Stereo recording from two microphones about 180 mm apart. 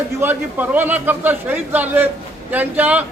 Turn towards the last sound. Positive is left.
turn(degrees=-10)  # may be behind; listen again after turning